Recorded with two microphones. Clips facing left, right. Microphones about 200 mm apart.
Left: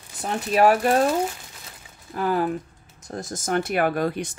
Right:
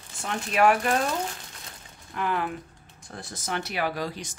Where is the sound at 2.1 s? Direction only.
35° left (ahead or behind).